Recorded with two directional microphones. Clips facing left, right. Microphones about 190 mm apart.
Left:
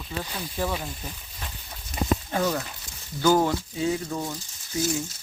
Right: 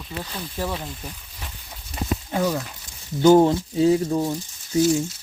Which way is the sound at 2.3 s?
10° right (ahead or behind).